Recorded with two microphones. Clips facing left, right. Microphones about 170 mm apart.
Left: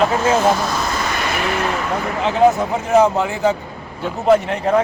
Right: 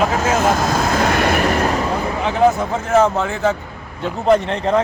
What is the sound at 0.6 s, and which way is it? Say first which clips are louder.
Speech: right 5 dB; 50° right (ahead or behind).